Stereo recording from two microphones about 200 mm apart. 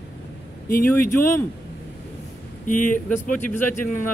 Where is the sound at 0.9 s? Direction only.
10° left (ahead or behind).